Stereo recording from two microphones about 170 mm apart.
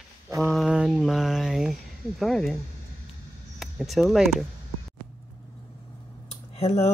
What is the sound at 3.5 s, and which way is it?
Speech, centre (ahead or behind).